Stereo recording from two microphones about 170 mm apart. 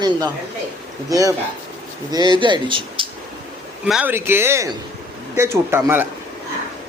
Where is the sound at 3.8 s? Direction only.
5° right (ahead or behind).